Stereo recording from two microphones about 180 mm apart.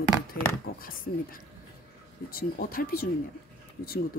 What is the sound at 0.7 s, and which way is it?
Speech, 90° left.